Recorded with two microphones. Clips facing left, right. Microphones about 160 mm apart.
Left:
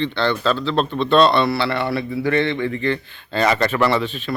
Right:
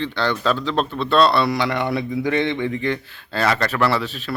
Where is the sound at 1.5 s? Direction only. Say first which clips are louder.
Even; 15° right (ahead or behind).